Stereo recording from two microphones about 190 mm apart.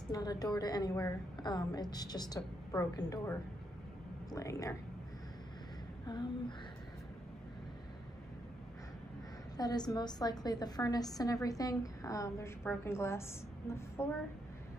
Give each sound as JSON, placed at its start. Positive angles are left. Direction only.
{"t": 0.1, "sound": "a woman's voice", "side_deg": 20}
{"t": 6.1, "sound": "a woman's voice", "side_deg": 25}
{"t": 9.6, "sound": "a woman's voice", "side_deg": 20}